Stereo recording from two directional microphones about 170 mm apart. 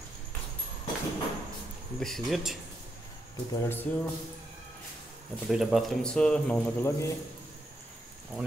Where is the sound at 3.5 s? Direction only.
10° left (ahead or behind).